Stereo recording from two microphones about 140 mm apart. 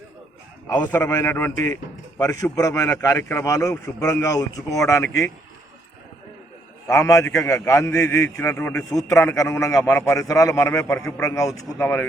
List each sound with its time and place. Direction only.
1.0 s a man's voice: 20° left (ahead or behind)
6.8 s a man's voice: 20° left (ahead or behind)